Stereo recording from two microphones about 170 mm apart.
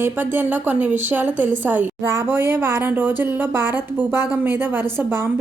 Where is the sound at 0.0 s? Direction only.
10° right (ahead or behind).